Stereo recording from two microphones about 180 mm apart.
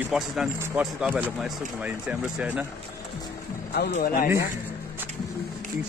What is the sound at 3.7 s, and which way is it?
Speech, 55° left (ahead or behind).